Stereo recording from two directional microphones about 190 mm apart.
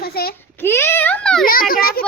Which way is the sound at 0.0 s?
55° left (ahead or behind).